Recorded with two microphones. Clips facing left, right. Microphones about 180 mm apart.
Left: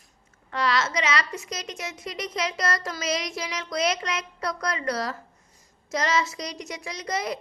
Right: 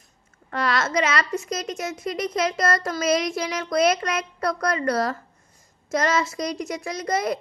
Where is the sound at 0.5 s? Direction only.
50° right (ahead or behind).